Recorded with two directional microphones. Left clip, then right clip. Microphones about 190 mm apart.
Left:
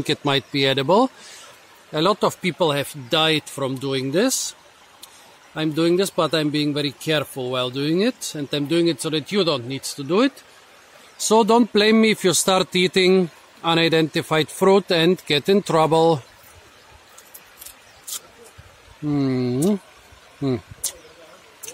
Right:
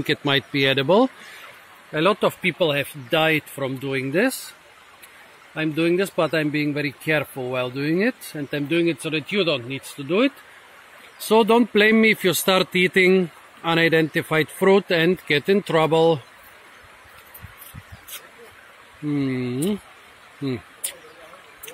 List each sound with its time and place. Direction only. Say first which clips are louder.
0.0 s speech: even; 10° left (ahead or behind)
1.9 s speech: even; 20° left (ahead or behind)
5.5 s speech: left 1 dB; 20° left (ahead or behind)
19.1 s speech: left 3 dB; 35° left (ahead or behind)